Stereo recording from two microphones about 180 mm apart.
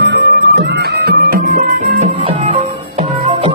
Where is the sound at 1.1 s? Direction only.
55° right (ahead or behind).